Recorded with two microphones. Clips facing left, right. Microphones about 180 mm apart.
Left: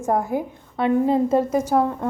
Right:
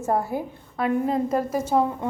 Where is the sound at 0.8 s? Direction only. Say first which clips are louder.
Left 4 dB; 25° left (ahead or behind).